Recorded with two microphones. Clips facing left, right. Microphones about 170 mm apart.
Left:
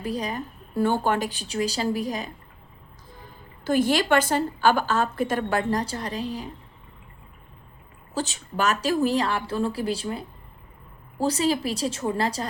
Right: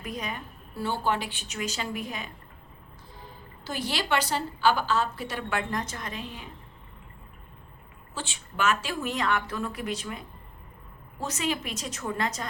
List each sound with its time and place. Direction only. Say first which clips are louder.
0.0 s a woman's voice: left 6 dB; 35° left (ahead or behind)
0.8 s a woman's voice: left 6 dB; 50° left (ahead or behind)
3.6 s a woman's voice: left 10 dB; 50° left (ahead or behind)
8.1 s a woman's voice: left 8 dB; 40° left (ahead or behind)